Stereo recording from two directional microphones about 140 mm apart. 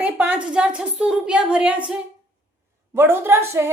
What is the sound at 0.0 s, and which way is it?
A woman's voice, 10° right (ahead or behind).